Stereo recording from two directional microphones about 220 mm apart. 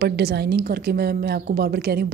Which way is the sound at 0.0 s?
45° right (ahead or behind).